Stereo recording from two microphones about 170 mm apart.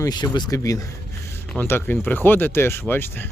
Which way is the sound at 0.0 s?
25° left (ahead or behind).